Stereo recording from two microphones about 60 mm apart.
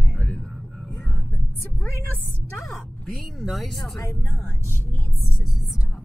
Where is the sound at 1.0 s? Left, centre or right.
Centre.